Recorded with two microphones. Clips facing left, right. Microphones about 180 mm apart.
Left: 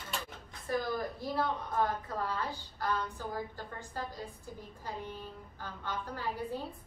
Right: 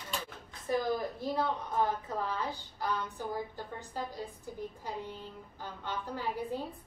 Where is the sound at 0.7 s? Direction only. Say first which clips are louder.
Right 2 dB; 15° right (ahead or behind).